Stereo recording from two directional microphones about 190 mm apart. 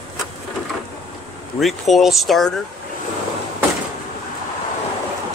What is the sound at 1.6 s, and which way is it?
Speech, centre (ahead or behind).